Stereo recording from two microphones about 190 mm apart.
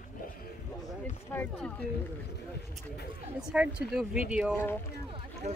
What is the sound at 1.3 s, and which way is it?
Speech, 10° left (ahead or behind).